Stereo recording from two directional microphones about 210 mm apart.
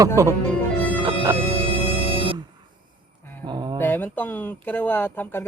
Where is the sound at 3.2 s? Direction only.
10° left (ahead or behind).